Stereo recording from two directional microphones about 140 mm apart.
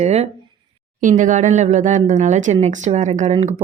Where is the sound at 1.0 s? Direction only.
65° right (ahead or behind).